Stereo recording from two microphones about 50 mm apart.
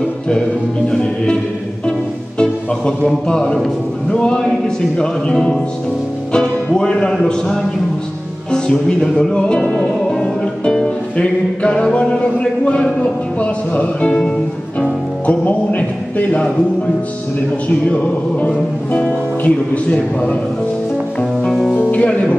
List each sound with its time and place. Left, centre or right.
0.8 s music: centre
8.5 s speech: centre
9.1 s music: centre
11.1 s a sound: centre
14.8 s music: left
17.8 s a sound: left
21.5 s music: centre
21.9 s speech: left